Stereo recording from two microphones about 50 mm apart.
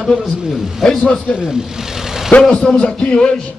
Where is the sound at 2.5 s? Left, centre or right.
Centre.